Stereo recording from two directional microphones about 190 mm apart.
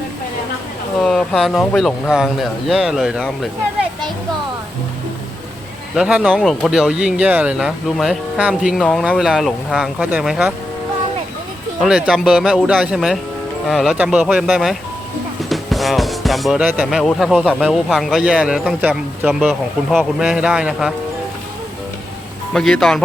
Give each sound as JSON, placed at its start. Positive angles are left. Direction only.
{"t": 1.0, "sound": "speech", "side_deg": 0}
{"t": 6.0, "sound": "speech", "side_deg": -5}
{"t": 11.8, "sound": "speech", "side_deg": -5}
{"t": 22.5, "sound": "speech", "side_deg": 5}